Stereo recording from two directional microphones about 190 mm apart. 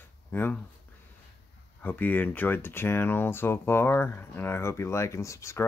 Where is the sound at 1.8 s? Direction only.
10° left (ahead or behind).